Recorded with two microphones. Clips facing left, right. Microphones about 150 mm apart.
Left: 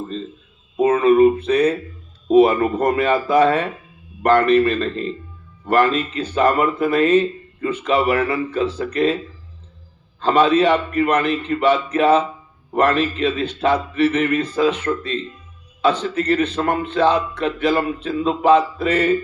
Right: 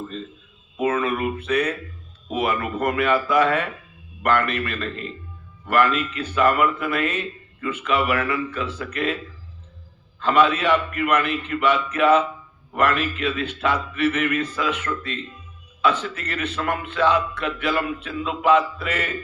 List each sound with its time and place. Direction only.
0.0 s speech: 30° left (ahead or behind)
10.2 s speech: 35° left (ahead or behind)